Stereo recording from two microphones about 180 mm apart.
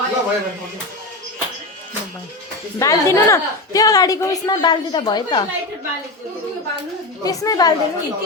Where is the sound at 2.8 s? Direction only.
15° left (ahead or behind).